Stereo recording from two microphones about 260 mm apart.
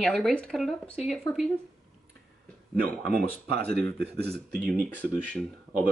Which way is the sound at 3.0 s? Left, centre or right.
Right.